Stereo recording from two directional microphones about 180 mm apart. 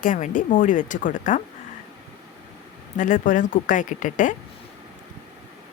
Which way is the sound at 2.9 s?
45° left (ahead or behind).